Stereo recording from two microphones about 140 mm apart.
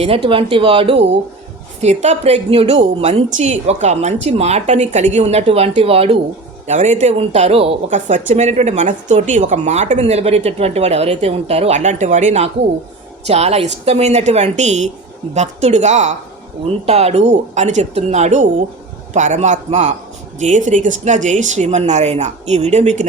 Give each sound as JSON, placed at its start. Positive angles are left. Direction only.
{"t": 0.0, "sound": "speech", "side_deg": -40}
{"t": 1.8, "sound": "speech", "side_deg": -50}
{"t": 6.7, "sound": "speech", "side_deg": -60}
{"t": 7.9, "sound": "speech", "side_deg": -60}
{"t": 16.6, "sound": "speech", "side_deg": -45}